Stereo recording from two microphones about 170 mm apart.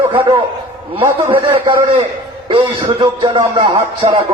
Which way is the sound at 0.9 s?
15° right (ahead or behind).